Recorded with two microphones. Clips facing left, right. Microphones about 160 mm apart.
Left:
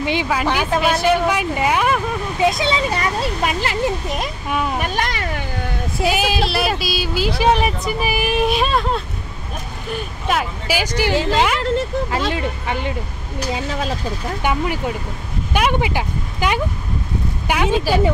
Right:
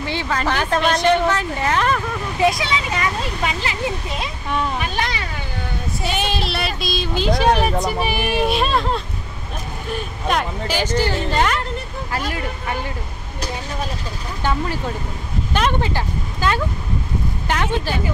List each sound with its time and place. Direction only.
0.0 s speech: 15° left (ahead or behind)
2.5 s speech: 30° left (ahead or behind)
4.7 s a sound: 50° left (ahead or behind)
6.0 s speech: 5° left (ahead or behind)
12.3 s speech: 20° left (ahead or behind)
14.4 s speech: 15° left (ahead or behind)
17.8 s speech: 90° left